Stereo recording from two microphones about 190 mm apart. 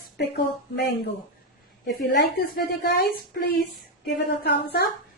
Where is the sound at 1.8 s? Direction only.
60° left (ahead or behind).